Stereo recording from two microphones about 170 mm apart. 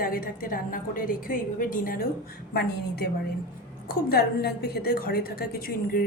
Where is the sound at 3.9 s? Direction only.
65° left (ahead or behind).